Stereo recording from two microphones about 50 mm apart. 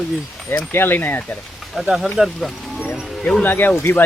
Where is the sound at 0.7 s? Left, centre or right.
Left.